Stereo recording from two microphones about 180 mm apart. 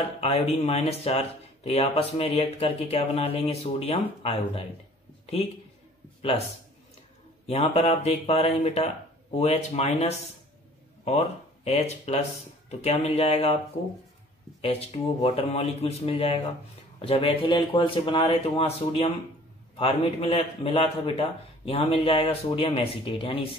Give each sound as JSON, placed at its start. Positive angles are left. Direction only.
{"t": 0.2, "sound": "speech", "side_deg": 35}
{"t": 5.2, "sound": "a sound", "side_deg": 35}
{"t": 7.4, "sound": "speech", "side_deg": 35}
{"t": 11.6, "sound": "speech", "side_deg": 35}
{"t": 14.6, "sound": "speech", "side_deg": 35}